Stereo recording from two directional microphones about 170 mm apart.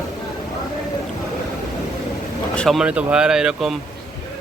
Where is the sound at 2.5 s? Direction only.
5° left (ahead or behind).